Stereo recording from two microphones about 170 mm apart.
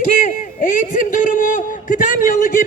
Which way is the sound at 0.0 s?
50° left (ahead or behind).